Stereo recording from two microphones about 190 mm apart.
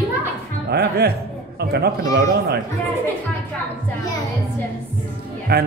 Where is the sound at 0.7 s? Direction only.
60° right (ahead or behind).